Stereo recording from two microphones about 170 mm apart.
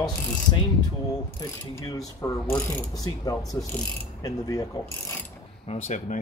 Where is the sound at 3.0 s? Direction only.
20° left (ahead or behind).